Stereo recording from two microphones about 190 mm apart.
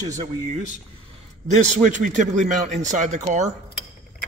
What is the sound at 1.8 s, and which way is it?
Speech, 40° right (ahead or behind).